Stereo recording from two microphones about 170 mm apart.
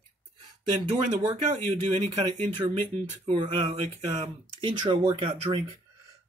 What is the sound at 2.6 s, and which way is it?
Speech, 25° right (ahead or behind).